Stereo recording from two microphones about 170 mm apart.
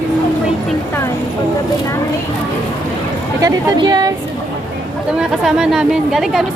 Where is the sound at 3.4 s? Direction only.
25° right (ahead or behind).